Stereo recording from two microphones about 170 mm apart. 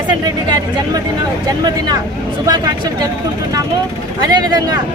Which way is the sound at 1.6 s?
25° right (ahead or behind).